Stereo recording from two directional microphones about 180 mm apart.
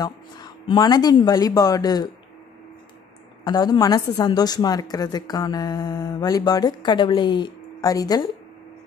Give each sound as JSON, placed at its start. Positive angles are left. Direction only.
{"t": 0.0, "sound": "a woman's voice", "side_deg": 20}
{"t": 3.4, "sound": "a woman's voice", "side_deg": 20}